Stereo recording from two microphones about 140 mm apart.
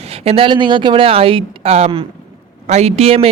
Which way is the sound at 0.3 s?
40° right (ahead or behind).